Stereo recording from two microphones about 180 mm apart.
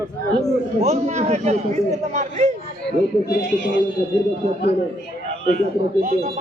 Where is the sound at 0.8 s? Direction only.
40° right (ahead or behind).